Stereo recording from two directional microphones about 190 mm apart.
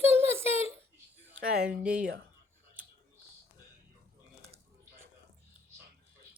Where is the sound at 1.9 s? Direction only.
50° right (ahead or behind).